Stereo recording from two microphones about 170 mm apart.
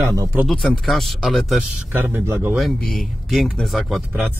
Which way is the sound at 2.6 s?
Centre (ahead or behind).